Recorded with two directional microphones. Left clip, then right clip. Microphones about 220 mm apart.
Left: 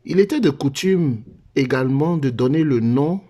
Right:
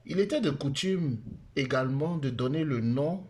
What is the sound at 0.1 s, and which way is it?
Speech, 40° left (ahead or behind).